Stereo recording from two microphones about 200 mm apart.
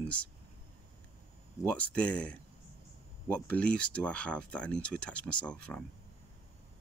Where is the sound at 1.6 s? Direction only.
5° left (ahead or behind).